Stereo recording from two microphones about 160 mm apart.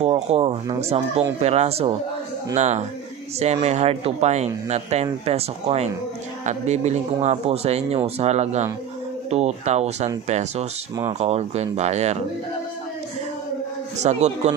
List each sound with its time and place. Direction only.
0.0 s speech: 40° right (ahead or behind)
14.0 s speech: 45° right (ahead or behind)